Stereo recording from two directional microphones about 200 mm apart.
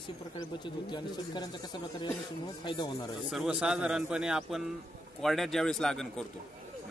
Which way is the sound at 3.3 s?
5° right (ahead or behind).